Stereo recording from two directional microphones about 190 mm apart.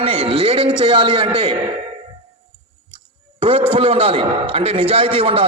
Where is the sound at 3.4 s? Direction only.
30° right (ahead or behind).